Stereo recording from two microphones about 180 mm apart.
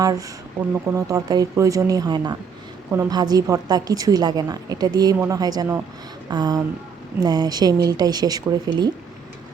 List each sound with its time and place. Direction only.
0.0 s a woman's voice: 20° right (ahead or behind)